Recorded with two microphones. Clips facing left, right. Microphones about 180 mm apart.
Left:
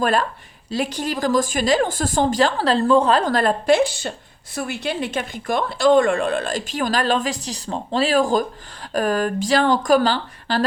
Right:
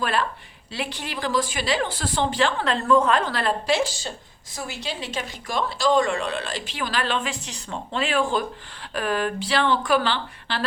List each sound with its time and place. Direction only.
0.0 s a woman's voice: 45° left (ahead or behind)